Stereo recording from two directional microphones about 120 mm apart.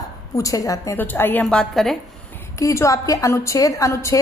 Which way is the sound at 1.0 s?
15° left (ahead or behind).